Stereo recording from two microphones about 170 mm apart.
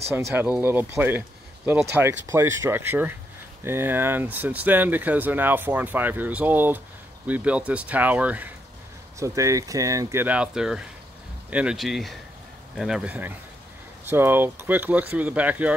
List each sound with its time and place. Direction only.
0.3 s speech: 10° right (ahead or behind)